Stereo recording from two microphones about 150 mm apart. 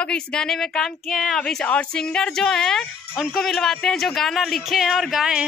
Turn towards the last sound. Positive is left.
turn(degrees=-5)  # may be behind; listen again after turning